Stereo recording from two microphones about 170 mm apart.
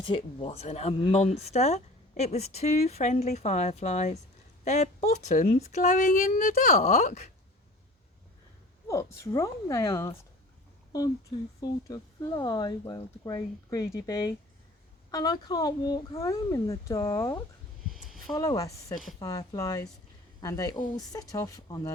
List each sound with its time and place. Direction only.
0.0 s speech: 30° left (ahead or behind)
8.9 s speech: 20° left (ahead or behind)
11.9 s speech: 20° left (ahead or behind)
17.9 s a sound: centre (ahead or behind)
18.3 s speech: 20° left (ahead or behind)